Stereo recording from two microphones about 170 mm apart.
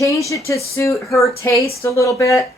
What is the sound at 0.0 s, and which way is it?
Speech, 20° left (ahead or behind).